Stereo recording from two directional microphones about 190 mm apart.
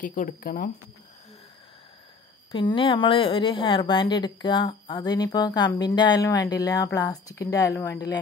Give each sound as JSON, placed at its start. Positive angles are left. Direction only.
{"t": 0.0, "sound": "speech", "side_deg": 45}
{"t": 2.5, "sound": "a woman's voice", "side_deg": 25}